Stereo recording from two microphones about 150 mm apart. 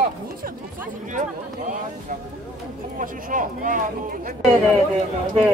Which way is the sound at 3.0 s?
60° right (ahead or behind).